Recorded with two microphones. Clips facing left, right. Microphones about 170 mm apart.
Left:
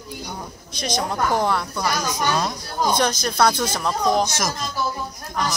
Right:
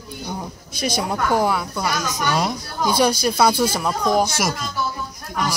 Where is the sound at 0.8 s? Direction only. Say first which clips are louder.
Right 1 dB; 10° right (ahead or behind).